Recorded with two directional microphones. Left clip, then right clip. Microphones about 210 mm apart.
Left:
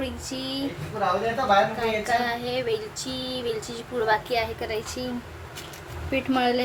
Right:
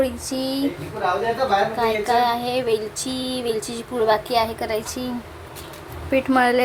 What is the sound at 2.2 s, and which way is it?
Female singing, 10° right (ahead or behind).